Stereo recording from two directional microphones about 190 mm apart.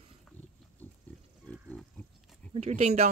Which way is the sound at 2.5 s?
30° right (ahead or behind).